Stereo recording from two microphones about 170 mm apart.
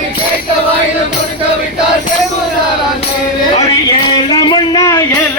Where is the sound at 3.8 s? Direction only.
25° left (ahead or behind).